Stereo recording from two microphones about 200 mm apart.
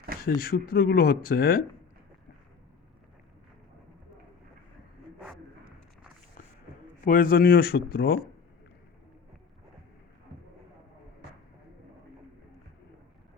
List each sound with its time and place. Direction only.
0.3 s speech: 50° left (ahead or behind)
5.2 s a sound: 5° right (ahead or behind)
7.0 s speech: 45° left (ahead or behind)